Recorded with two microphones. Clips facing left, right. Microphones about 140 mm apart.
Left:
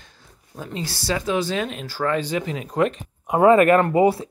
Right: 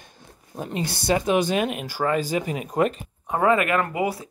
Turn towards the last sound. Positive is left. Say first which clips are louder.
# left 7 dB
turn(degrees=30)  # may be behind; listen again after turning